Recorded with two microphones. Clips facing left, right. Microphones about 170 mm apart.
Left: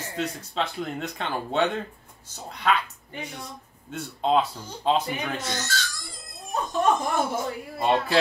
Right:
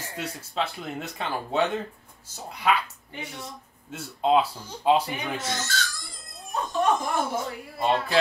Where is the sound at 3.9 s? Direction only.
5° right (ahead or behind).